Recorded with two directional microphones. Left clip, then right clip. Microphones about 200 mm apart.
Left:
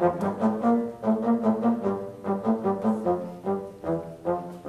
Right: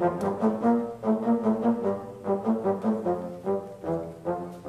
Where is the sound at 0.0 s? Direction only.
20° left (ahead or behind).